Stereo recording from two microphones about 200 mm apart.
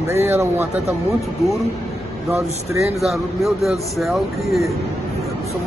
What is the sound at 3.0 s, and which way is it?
Speech, centre (ahead or behind).